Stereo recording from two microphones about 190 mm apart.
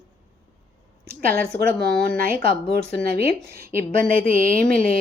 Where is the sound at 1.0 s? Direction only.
50° right (ahead or behind).